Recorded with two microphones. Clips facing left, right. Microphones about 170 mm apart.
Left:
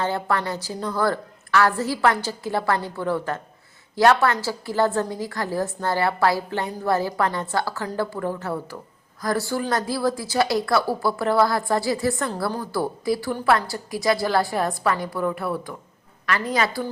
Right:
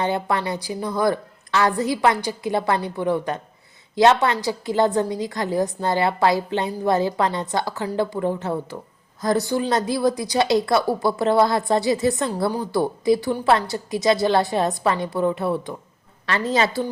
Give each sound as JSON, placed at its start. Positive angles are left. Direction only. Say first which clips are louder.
{"t": 0.0, "sound": "a woman's voice", "louder": "right 2 dB", "side_deg": -20}